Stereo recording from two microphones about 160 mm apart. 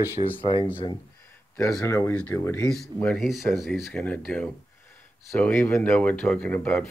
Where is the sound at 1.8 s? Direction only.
15° left (ahead or behind).